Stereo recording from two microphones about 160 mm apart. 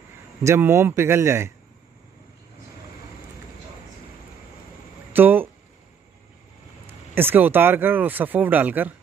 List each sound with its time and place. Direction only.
0.4 s speech: 15° right (ahead or behind)
5.1 s a sound: 10° right (ahead or behind)
6.9 s speech: 15° right (ahead or behind)